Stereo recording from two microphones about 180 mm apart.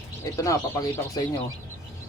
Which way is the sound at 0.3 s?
20° left (ahead or behind).